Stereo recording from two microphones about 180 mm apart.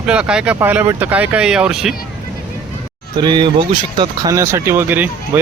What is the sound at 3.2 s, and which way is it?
Speech, 25° right (ahead or behind).